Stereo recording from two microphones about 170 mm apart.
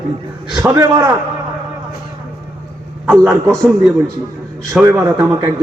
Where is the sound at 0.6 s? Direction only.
20° right (ahead or behind).